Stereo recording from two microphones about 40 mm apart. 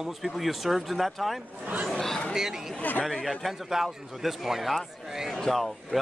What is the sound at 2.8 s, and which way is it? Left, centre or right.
Speech, left.